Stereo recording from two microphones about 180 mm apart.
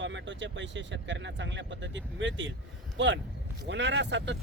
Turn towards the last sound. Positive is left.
turn(degrees=-75)  # may be behind; listen again after turning